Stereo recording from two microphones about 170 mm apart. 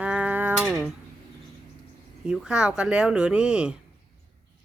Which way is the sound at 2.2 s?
5° right (ahead or behind).